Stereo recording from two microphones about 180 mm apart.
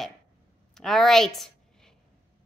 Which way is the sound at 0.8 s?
Centre (ahead or behind).